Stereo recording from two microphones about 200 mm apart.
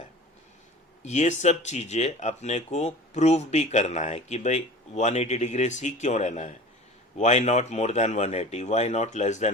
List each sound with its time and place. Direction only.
1.0 s speech: 35° left (ahead or behind)